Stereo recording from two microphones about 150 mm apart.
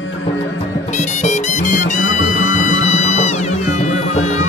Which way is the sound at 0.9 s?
50° left (ahead or behind).